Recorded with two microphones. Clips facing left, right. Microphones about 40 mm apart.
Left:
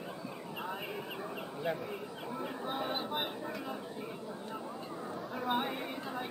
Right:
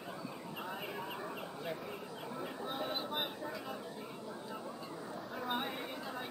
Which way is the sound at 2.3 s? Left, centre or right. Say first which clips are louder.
Left 3 dB; centre.